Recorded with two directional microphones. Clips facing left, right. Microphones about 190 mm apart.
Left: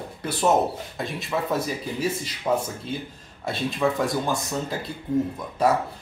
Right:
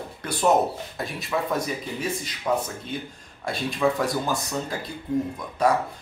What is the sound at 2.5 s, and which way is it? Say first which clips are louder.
Speech: left 1 dB; 15° left (ahead or behind).